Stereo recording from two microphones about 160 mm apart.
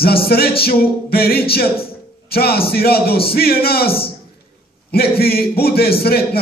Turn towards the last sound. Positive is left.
turn(degrees=75)  # may be behind; listen again after turning